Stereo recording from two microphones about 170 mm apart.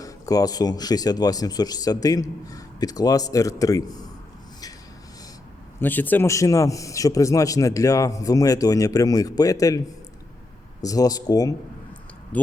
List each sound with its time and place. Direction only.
0.0 s a man's voice: 20° left (ahead or behind)
5.8 s a man's voice: 10° left (ahead or behind)
10.8 s a man's voice: 20° left (ahead or behind)
12.3 s speech: 10° left (ahead or behind)